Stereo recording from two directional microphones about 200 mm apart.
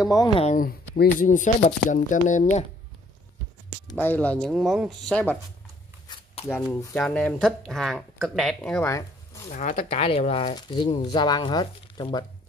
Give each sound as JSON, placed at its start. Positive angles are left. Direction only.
{"t": 0.0, "sound": "speech", "side_deg": 20}
{"t": 0.6, "sound": "speech", "side_deg": 45}
{"t": 3.8, "sound": "speech", "side_deg": 10}
{"t": 6.4, "sound": "speech", "side_deg": 10}
{"t": 9.5, "sound": "speech", "side_deg": 40}